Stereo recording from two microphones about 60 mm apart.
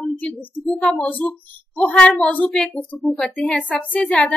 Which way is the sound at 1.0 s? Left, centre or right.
Left.